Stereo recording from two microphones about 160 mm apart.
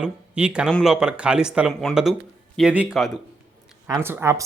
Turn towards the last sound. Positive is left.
turn(degrees=-15)  # may be behind; listen again after turning